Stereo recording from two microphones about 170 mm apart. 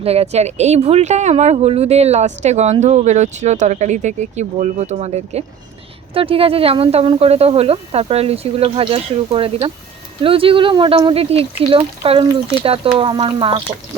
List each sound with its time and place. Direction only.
0.0 s speech: 35° right (ahead or behind)